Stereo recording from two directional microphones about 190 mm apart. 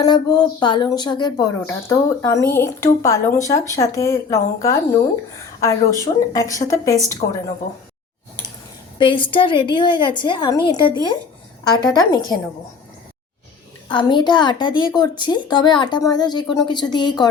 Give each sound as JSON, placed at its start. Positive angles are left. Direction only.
{"t": 0.0, "sound": "speech", "side_deg": 20}
{"t": 9.0, "sound": "a woman's voice", "side_deg": 25}
{"t": 13.8, "sound": "a woman's voice", "side_deg": 25}